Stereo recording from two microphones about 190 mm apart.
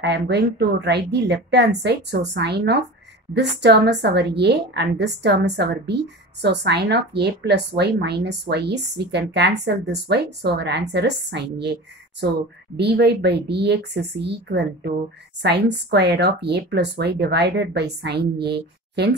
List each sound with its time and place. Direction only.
0.0 s speech: 60° right (ahead or behind)
12.7 s speech: 60° right (ahead or behind)